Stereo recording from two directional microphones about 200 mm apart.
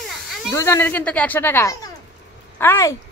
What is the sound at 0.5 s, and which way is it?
Speech, 15° left (ahead or behind).